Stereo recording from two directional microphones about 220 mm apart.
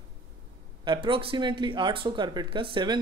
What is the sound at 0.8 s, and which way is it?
Speech, 25° right (ahead or behind).